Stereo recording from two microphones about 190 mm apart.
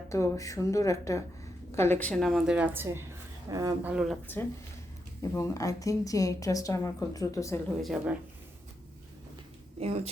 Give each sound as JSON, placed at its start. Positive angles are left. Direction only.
{"t": 0.1, "sound": "a woman's voice", "side_deg": 15}
{"t": 3.9, "sound": "a woman's voice", "side_deg": 0}
{"t": 5.3, "sound": "a woman's voice", "side_deg": 15}
{"t": 7.8, "sound": "a woman's voice", "side_deg": 0}
{"t": 9.8, "sound": "a woman's voice", "side_deg": -30}